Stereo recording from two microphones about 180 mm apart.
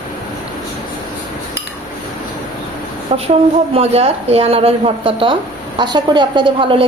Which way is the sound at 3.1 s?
35° right (ahead or behind).